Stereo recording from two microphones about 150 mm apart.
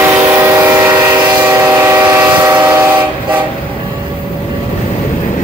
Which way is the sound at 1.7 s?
15° right (ahead or behind).